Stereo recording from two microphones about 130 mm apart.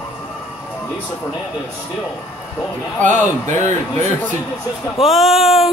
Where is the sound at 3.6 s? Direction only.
20° left (ahead or behind).